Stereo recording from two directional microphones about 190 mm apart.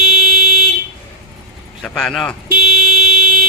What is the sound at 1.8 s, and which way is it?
Speech, 5° left (ahead or behind).